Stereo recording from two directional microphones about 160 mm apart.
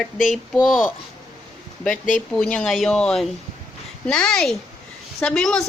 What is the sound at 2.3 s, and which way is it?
Speech, 5° left (ahead or behind).